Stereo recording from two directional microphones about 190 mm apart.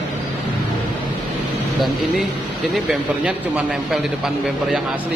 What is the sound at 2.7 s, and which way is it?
A man's voice, 5° right (ahead or behind).